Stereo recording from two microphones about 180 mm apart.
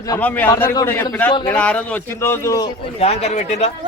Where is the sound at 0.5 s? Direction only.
20° left (ahead or behind).